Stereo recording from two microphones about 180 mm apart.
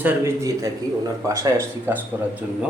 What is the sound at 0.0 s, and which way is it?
Speech, 10° right (ahead or behind).